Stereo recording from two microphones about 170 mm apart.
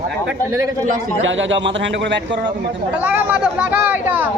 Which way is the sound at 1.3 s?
90° right.